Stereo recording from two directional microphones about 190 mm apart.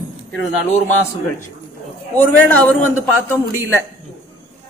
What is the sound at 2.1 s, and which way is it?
A man's voice, 10° left (ahead or behind).